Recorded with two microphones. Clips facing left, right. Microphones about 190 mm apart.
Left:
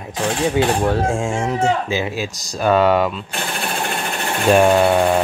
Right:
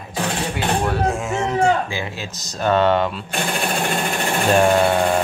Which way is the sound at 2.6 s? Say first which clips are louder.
Left 2 dB; 10° left (ahead or behind).